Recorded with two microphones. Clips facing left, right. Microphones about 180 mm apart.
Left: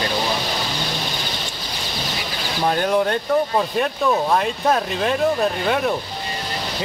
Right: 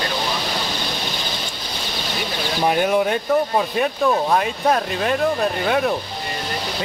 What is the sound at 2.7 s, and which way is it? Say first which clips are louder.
Speech: even; 10° right (ahead or behind).